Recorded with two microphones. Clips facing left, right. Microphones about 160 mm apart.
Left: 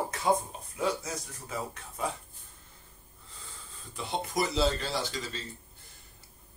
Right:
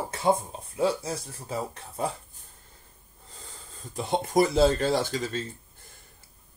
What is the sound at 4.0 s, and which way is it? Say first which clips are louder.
Speech: right 8 dB; 45° right (ahead or behind).